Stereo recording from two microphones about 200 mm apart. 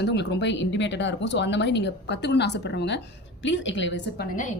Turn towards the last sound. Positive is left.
turn(degrees=65)  # may be behind; listen again after turning